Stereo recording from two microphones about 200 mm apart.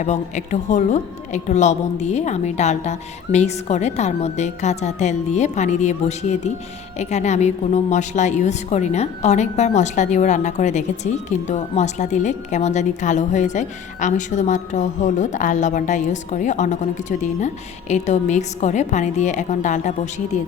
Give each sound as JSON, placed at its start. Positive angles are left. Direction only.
{"t": 0.0, "sound": "a woman's voice", "side_deg": 35}